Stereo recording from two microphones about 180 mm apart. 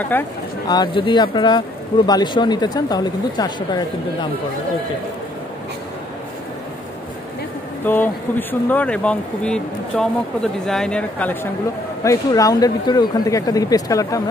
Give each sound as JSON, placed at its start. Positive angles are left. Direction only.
{"t": 0.1, "sound": "speech", "side_deg": 10}
{"t": 0.7, "sound": "speech", "side_deg": 25}
{"t": 7.8, "sound": "speech", "side_deg": 10}
{"t": 12.0, "sound": "speech", "side_deg": 20}